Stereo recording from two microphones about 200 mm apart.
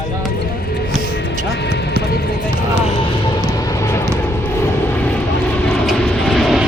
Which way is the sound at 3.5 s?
20° left (ahead or behind).